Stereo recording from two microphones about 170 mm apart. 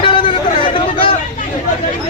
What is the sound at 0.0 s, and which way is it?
Hubbub, 30° left (ahead or behind).